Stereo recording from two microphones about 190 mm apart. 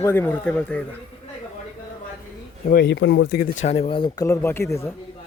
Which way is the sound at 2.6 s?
55° left (ahead or behind).